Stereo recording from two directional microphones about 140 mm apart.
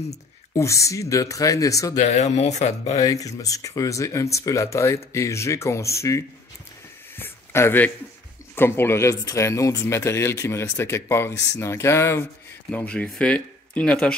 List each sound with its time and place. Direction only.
0.1 s speech: 20° left (ahead or behind)
2.0 s speech: 55° left (ahead or behind)
3.0 s speech: 25° left (ahead or behind)
7.2 s a sound: 15° left (ahead or behind)
8.5 s speech: 15° left (ahead or behind)
12.7 s speech: 10° left (ahead or behind)